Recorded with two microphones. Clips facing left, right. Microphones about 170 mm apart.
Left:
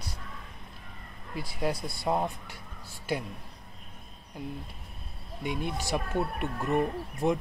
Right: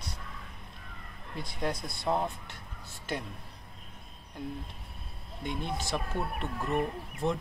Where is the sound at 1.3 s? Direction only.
5° left (ahead or behind).